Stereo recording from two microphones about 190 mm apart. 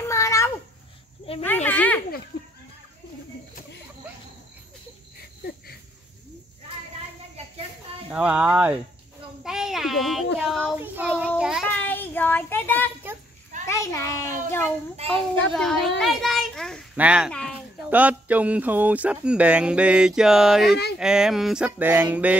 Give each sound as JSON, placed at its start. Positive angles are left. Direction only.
{"t": 0.0, "sound": "babbling", "side_deg": 15}
{"t": 1.4, "sound": "a sound", "side_deg": 10}
{"t": 8.1, "sound": "speech", "side_deg": -5}
{"t": 9.4, "sound": "child singing", "side_deg": -5}
{"t": 11.6, "sound": "child singing", "side_deg": 10}
{"t": 13.7, "sound": "a child's voice", "side_deg": 15}
{"t": 15.0, "sound": "a child's voice", "side_deg": -30}
{"t": 15.5, "sound": "a child's voice", "side_deg": 0}
{"t": 17.3, "sound": "a sound", "side_deg": 5}
{"t": 17.8, "sound": "speech", "side_deg": -10}